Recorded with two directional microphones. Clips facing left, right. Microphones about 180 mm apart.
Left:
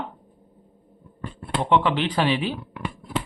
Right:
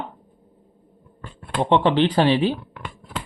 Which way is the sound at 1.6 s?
30° right (ahead or behind).